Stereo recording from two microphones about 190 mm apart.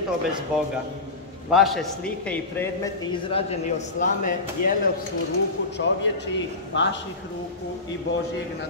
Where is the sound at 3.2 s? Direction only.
30° left (ahead or behind).